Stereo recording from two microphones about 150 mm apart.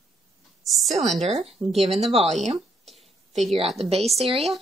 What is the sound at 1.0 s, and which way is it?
Speech, 45° right (ahead or behind).